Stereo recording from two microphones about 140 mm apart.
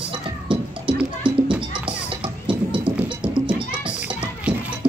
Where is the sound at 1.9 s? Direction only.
35° right (ahead or behind).